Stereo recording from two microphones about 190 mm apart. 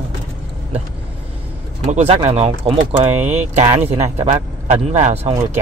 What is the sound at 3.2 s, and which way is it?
Speech, 10° right (ahead or behind).